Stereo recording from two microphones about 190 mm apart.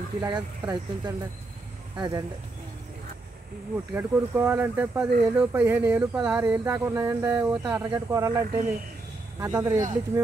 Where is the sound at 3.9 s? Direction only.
10° right (ahead or behind).